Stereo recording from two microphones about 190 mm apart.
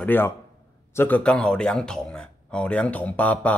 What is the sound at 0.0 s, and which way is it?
Speech, 10° left (ahead or behind).